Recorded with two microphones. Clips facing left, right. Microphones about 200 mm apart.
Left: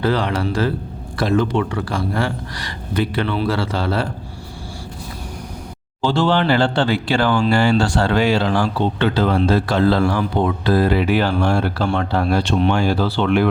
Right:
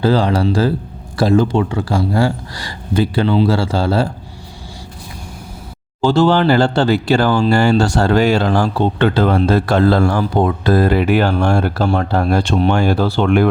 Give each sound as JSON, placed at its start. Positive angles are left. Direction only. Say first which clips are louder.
{"t": 0.0, "sound": "speech", "louder": "right 5 dB", "side_deg": -30}
{"t": 6.0, "sound": "speech", "louder": "right 5 dB", "side_deg": -45}